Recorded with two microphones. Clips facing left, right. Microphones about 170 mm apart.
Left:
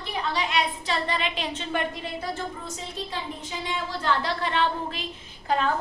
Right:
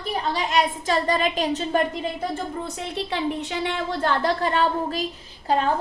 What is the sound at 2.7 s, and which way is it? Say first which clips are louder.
A woman's voice: right 6 dB; 70° right (ahead or behind).